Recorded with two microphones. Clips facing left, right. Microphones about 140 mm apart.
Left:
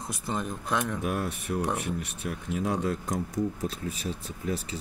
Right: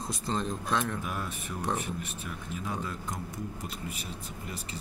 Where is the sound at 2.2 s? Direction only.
80° left.